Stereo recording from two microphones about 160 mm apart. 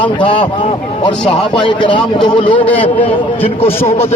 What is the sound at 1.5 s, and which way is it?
A man's voice, 30° left (ahead or behind).